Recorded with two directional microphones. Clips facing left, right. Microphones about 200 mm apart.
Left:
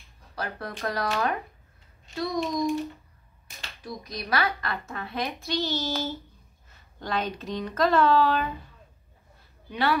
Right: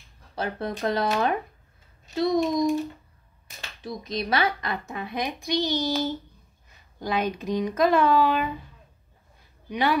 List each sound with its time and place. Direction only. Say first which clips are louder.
0.4 s speech: right 5 dB; 20° right (ahead or behind)
3.8 s a woman's voice: right 6 dB; 25° right (ahead or behind)
9.7 s speech: right 2 dB; 15° right (ahead or behind)